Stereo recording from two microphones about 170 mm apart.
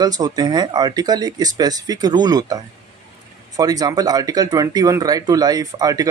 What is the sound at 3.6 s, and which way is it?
Speech, 20° right (ahead or behind).